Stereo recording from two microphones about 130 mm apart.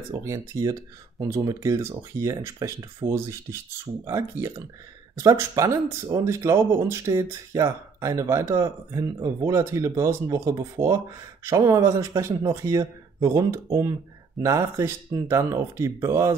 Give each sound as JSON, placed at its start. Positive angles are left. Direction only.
{"t": 0.2, "sound": "speech", "side_deg": -25}